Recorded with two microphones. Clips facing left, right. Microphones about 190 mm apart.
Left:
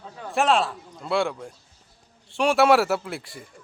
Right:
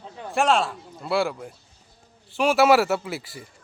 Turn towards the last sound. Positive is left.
turn(degrees=-5)  # may be behind; listen again after turning